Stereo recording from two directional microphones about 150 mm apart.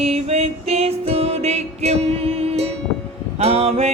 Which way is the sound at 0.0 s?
45° right (ahead or behind).